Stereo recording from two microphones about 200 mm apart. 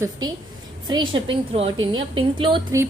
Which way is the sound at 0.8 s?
25° right (ahead or behind).